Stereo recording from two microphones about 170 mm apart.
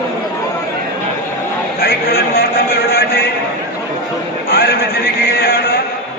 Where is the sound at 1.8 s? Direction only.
65° left (ahead or behind).